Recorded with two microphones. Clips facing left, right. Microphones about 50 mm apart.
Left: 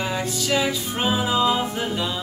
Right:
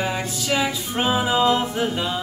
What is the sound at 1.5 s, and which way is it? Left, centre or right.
Music, centre.